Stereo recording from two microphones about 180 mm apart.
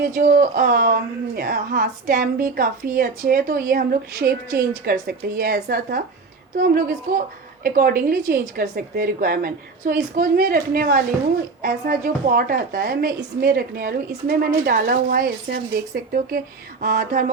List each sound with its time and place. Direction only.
0.0 s a woman's voice: 55° right (ahead or behind)
16.8 s a woman's voice: 55° right (ahead or behind)